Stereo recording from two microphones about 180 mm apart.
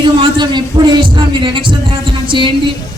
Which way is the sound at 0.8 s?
20° right (ahead or behind).